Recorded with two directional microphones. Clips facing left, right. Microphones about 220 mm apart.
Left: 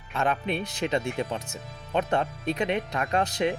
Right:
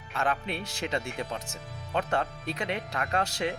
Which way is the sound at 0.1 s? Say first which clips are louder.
Left 4 dB; 20° left (ahead or behind).